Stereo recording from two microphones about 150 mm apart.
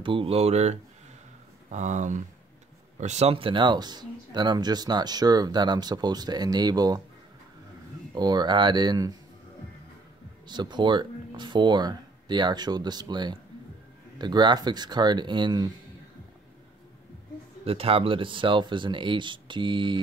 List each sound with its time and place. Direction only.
0.0 s speech: 35° right (ahead or behind)
8.1 s speech: 30° right (ahead or behind)
10.4 s speech: 30° right (ahead or behind)
17.6 s speech: 40° right (ahead or behind)